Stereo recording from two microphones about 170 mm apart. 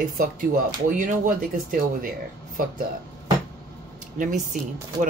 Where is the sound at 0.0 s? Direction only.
55° right (ahead or behind).